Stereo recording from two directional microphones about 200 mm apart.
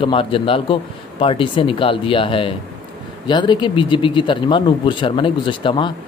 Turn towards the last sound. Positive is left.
turn(degrees=25)  # may be behind; listen again after turning